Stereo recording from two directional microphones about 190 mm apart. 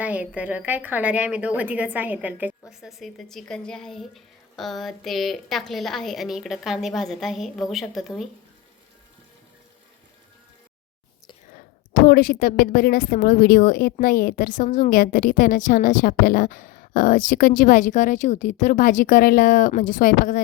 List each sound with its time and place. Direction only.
0.0 s a woman's voice: 5° right (ahead or behind)
11.5 s a woman's voice: 50° left (ahead or behind)